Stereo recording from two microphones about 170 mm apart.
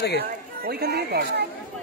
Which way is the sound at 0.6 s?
65° right (ahead or behind).